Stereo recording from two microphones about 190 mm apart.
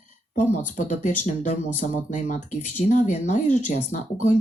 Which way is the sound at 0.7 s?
40° left (ahead or behind).